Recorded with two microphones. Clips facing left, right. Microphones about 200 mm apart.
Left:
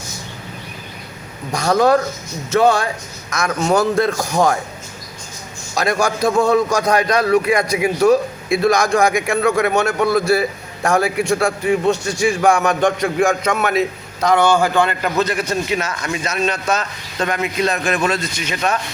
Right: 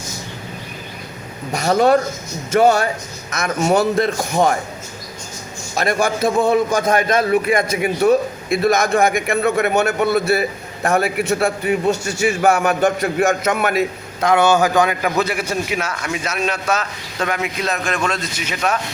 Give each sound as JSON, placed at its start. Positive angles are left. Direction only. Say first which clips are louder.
{"t": 1.6, "sound": "speech", "louder": "even", "side_deg": -25}
{"t": 3.3, "sound": "a man's voice", "louder": "even", "side_deg": -5}
{"t": 5.9, "sound": "a man's voice", "louder": "even", "side_deg": 0}